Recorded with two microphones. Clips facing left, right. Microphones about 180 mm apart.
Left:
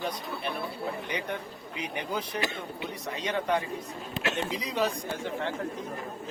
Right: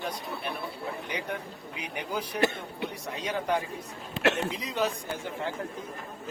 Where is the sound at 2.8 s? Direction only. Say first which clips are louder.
Right 2 dB; 5° right (ahead or behind).